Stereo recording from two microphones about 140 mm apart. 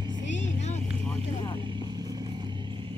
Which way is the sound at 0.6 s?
55° left (ahead or behind).